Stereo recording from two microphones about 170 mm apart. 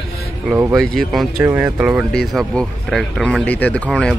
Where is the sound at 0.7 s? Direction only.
Centre (ahead or behind).